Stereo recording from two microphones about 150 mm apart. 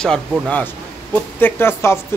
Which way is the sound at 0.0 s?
5° left (ahead or behind).